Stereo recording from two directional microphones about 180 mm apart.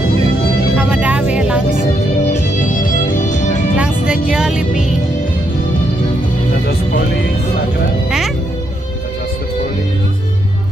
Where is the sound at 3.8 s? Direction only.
5° right (ahead or behind).